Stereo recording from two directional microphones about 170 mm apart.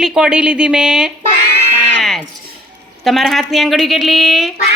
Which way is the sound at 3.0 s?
Centre (ahead or behind).